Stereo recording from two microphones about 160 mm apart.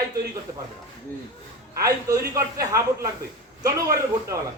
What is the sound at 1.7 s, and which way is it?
A man's voice, 20° right (ahead or behind).